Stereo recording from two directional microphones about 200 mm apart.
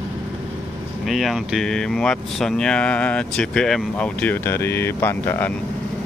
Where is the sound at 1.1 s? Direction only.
Centre (ahead or behind).